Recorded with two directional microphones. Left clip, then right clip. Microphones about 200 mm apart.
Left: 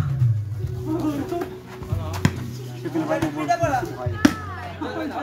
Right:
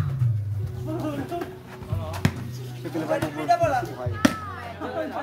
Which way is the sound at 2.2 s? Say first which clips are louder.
Left 3 dB; 10° right (ahead or behind).